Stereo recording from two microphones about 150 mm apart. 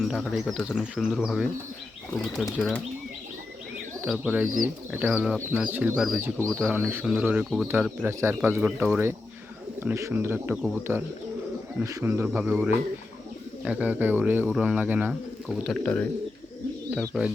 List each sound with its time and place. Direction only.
0.0 s speech: centre (ahead or behind)
4.0 s speech: 10° right (ahead or behind)
15.4 s speech: centre (ahead or behind)
17.1 s speech: 5° right (ahead or behind)